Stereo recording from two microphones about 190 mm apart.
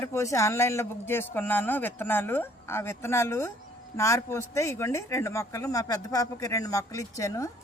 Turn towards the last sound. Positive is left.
turn(degrees=15)  # may be behind; listen again after turning